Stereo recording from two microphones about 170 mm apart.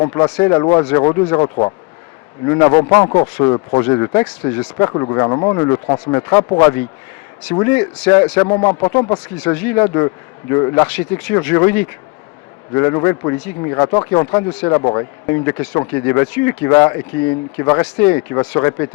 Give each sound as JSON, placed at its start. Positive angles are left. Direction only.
{"t": 0.1, "sound": "speech", "side_deg": 20}
{"t": 2.4, "sound": "a man's voice", "side_deg": 20}
{"t": 9.4, "sound": "a man's voice", "side_deg": 10}